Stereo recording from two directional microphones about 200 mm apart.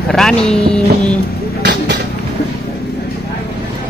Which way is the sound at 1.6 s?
55° right (ahead or behind).